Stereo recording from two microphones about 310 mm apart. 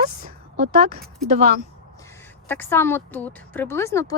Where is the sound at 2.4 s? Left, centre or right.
Centre.